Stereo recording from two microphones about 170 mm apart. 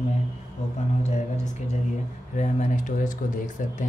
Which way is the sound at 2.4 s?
45° left (ahead or behind).